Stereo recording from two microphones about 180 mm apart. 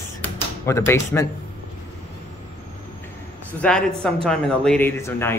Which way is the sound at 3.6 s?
5° left (ahead or behind).